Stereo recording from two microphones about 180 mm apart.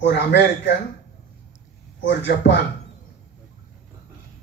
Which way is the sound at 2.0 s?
75° left (ahead or behind).